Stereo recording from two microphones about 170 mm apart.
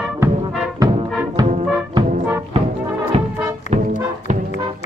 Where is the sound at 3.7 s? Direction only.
40° right (ahead or behind).